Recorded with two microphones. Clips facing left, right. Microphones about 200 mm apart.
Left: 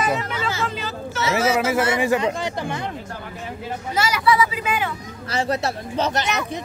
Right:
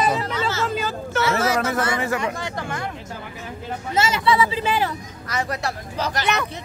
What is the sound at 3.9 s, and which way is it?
Speech, 25° right (ahead or behind).